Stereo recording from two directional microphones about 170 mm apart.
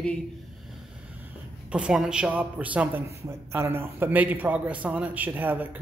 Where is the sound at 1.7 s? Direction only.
5° right (ahead or behind).